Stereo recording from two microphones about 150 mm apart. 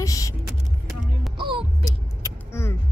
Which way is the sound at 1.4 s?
35° right (ahead or behind).